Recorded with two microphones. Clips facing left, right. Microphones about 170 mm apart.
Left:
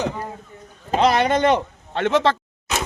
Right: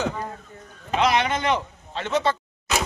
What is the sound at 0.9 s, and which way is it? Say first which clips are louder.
A man's voice: left 4 dB; 40° left (ahead or behind).